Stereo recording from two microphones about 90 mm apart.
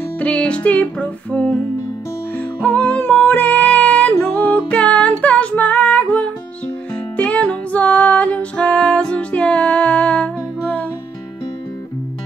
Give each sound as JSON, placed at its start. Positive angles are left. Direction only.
{"t": 0.2, "sound": "music", "side_deg": 15}